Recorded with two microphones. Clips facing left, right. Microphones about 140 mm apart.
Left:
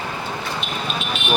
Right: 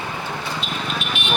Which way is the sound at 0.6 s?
20° left (ahead or behind).